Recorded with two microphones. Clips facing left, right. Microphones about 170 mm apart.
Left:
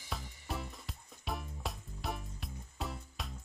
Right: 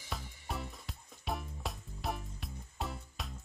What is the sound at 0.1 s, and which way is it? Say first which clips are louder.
Music: even; centre (ahead or behind).